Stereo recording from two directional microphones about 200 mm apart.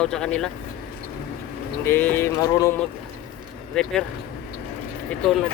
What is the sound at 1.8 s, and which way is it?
Speech, 10° left (ahead or behind).